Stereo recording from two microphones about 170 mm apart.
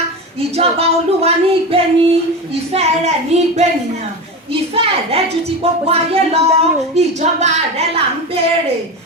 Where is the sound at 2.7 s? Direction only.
40° right (ahead or behind).